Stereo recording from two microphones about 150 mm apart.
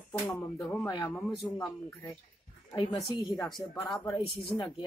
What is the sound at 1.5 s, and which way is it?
Speech, 20° left (ahead or behind).